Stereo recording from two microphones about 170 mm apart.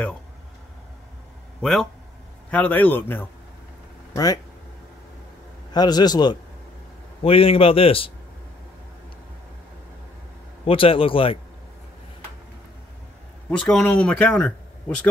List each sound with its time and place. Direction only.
1.6 s a man's voice: centre (ahead or behind)
4.1 s speech: 20° left (ahead or behind)
5.7 s a man's voice: 25° left (ahead or behind)
10.6 s a man's voice: 35° left (ahead or behind)
13.5 s speech: 5° left (ahead or behind)